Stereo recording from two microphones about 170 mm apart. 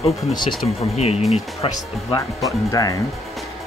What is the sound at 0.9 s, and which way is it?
Speech, 40° left (ahead or behind).